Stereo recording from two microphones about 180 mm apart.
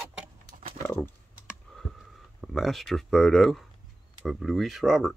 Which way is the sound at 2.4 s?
Centre (ahead or behind).